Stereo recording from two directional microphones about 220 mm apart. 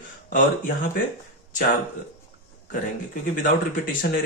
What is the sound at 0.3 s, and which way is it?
Speech, 35° left (ahead or behind).